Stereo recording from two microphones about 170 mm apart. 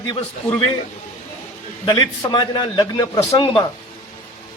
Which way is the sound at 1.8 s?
25° left (ahead or behind).